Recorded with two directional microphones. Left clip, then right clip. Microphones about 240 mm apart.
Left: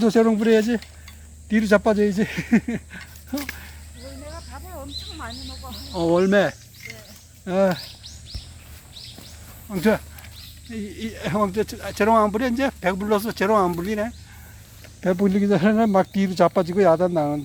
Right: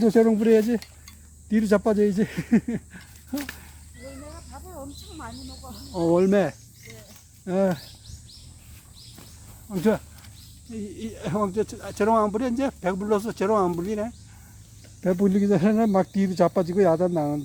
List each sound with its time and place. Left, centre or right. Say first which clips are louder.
0.0 s speech: left 1 dB; centre
4.5 s snake: left 4 dB; right
5.9 s speech: left 2 dB; centre
9.6 s speech: left 3 dB; centre